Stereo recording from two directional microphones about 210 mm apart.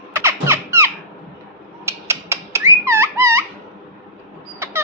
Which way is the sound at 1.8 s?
15° right (ahead or behind).